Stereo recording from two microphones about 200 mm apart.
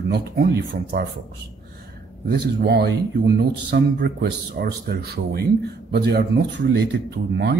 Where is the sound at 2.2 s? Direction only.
55° right (ahead or behind).